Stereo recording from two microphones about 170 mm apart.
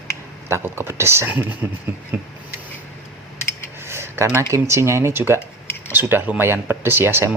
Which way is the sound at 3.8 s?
15° right (ahead or behind).